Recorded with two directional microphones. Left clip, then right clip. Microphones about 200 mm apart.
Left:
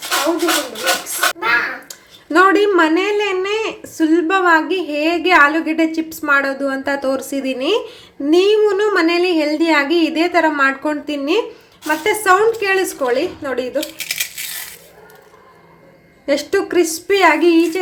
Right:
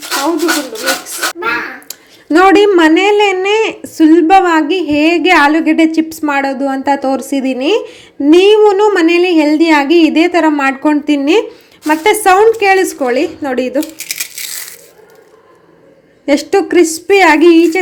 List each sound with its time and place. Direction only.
2.3 s a woman's voice: 35° right (ahead or behind)
13.8 s coin: 5° right (ahead or behind)
16.2 s a woman's voice: 30° right (ahead or behind)